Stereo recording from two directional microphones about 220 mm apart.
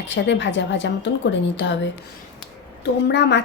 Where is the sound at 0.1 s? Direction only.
55° left (ahead or behind).